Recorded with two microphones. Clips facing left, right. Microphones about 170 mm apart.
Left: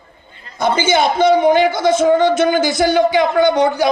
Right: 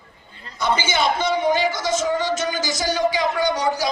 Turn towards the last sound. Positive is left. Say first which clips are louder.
# left 8 dB
turn(degrees=60)  # may be behind; listen again after turning